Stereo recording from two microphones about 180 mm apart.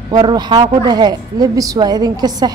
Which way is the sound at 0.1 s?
20° right (ahead or behind).